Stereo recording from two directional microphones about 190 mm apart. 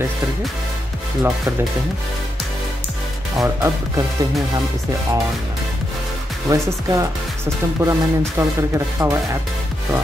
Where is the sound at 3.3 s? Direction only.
15° right (ahead or behind).